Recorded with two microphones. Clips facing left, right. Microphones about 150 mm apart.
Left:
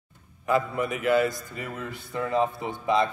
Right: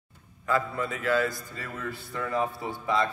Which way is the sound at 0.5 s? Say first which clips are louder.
Left 3 dB; 20° left (ahead or behind).